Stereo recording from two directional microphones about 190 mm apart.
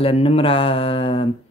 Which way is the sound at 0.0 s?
30° left (ahead or behind).